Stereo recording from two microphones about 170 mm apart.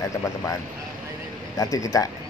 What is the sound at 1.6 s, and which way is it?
Speech, 20° left (ahead or behind).